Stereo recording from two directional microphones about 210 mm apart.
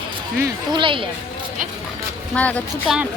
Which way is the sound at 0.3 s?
20° right (ahead or behind).